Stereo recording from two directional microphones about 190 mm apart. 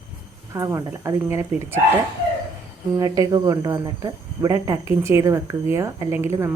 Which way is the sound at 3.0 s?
20° right (ahead or behind).